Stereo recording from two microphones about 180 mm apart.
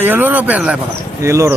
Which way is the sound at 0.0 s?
10° right (ahead or behind).